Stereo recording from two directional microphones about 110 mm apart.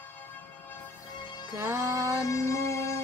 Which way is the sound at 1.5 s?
25° right (ahead or behind).